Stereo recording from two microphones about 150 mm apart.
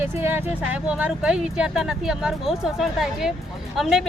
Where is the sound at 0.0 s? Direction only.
15° right (ahead or behind).